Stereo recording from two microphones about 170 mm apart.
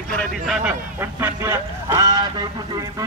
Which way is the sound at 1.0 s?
15° right (ahead or behind).